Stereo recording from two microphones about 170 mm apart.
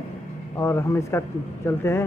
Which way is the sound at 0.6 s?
15° left (ahead or behind).